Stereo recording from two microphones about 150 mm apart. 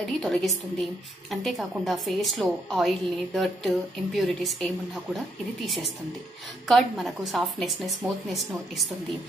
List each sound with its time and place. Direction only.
0.0 s a woman's voice: centre (ahead or behind)